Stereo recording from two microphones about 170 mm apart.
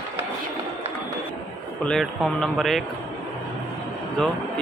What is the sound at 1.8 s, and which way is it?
Speech, centre (ahead or behind).